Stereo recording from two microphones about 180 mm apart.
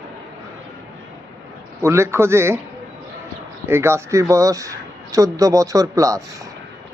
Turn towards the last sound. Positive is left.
turn(degrees=-20)  # may be behind; listen again after turning